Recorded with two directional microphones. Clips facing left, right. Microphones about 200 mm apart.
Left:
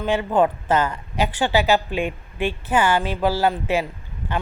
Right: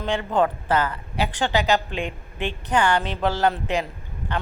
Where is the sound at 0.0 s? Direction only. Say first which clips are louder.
Left 3 dB; 10° left (ahead or behind).